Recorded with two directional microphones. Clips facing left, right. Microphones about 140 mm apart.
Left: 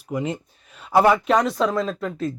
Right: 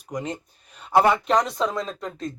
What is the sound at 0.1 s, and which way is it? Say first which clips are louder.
Speech: left 4 dB; 5° left (ahead or behind).